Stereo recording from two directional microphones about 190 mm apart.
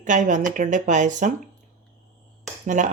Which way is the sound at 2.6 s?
40° right (ahead or behind).